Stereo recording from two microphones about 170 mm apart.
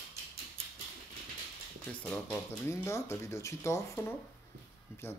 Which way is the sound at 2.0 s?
5° left (ahead or behind).